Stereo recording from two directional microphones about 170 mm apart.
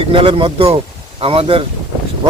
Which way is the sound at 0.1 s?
30° right (ahead or behind).